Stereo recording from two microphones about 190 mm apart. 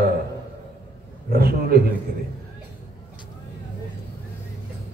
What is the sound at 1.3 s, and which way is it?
Mantra, 55° right (ahead or behind).